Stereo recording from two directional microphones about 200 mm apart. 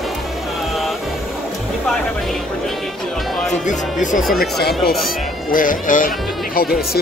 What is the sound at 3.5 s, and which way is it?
Speech, 40° left (ahead or behind).